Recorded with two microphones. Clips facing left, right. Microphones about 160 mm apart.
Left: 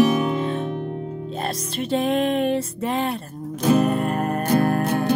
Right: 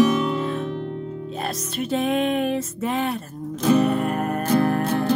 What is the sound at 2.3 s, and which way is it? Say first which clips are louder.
Music: left 2 dB; centre (ahead or behind).